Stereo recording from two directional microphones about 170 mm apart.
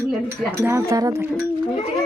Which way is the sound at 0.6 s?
15° right (ahead or behind).